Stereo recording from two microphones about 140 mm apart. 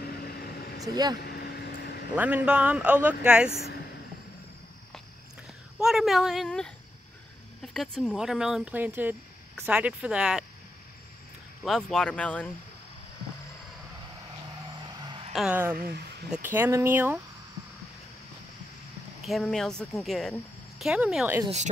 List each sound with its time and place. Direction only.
0.7 s speech: 25° right (ahead or behind)
2.1 s speech: 10° right (ahead or behind)
5.8 s speech: centre (ahead or behind)
11.6 s speech: 5° left (ahead or behind)
15.0 s a sound: 35° right (ahead or behind)
15.3 s speech: 10° right (ahead or behind)
19.2 s speech: centre (ahead or behind)